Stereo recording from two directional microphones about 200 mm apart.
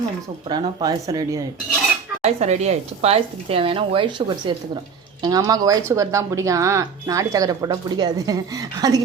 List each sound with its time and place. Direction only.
0.4 s speech: 20° right (ahead or behind)
2.2 s speech: 35° right (ahead or behind); by 9.0 s 20° right (ahead or behind)